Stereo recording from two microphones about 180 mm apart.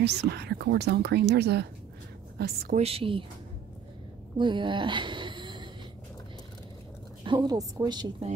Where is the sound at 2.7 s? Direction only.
35° right (ahead or behind).